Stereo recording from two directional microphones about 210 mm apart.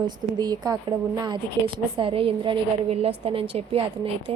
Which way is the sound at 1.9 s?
25° right (ahead or behind).